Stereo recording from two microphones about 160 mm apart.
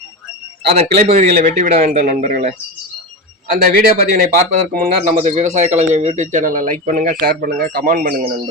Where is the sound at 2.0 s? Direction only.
60° right (ahead or behind).